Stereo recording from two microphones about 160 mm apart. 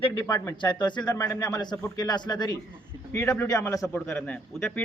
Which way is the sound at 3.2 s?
5° left (ahead or behind).